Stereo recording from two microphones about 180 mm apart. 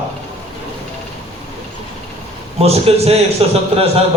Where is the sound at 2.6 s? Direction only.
35° right (ahead or behind).